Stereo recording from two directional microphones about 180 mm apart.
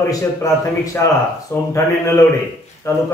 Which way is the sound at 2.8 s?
15° left (ahead or behind).